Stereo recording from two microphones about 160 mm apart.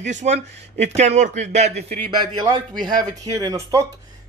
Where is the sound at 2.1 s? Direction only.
30° right (ahead or behind).